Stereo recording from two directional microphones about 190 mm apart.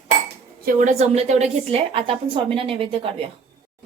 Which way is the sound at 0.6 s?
50° right (ahead or behind).